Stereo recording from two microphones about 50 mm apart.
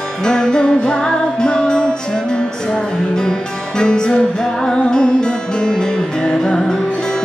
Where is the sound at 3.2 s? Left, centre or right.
Centre.